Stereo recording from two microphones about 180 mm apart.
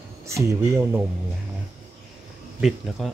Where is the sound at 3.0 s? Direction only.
Centre (ahead or behind).